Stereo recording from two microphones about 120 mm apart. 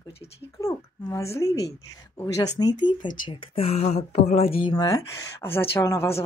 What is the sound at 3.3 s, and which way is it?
A woman's voice, 55° left (ahead or behind).